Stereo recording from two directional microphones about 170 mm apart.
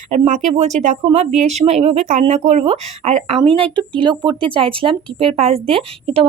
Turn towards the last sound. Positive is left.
turn(degrees=-35)  # may be behind; listen again after turning